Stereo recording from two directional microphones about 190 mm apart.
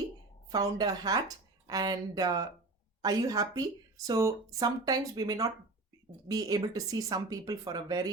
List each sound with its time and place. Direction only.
0.5 s speech: 20° right (ahead or behind)